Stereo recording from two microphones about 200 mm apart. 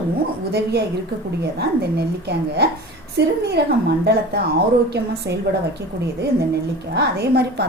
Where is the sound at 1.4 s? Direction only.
55° right (ahead or behind).